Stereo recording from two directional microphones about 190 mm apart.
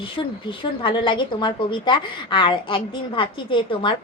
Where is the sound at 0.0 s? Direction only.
25° left (ahead or behind).